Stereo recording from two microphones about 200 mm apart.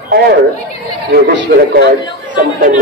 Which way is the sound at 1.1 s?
60° right (ahead or behind).